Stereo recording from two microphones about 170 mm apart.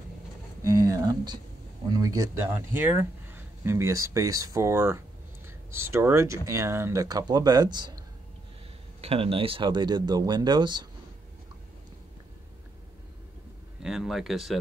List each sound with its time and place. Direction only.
0.7 s speech: 20° right (ahead or behind)
9.0 s speech: 35° right (ahead or behind)
13.8 s speech: centre (ahead or behind)